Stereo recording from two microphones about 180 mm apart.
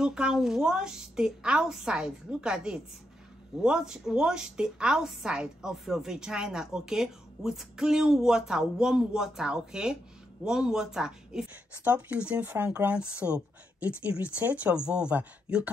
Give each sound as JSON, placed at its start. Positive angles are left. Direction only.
{"t": 0.0, "sound": "a woman's voice", "side_deg": -5}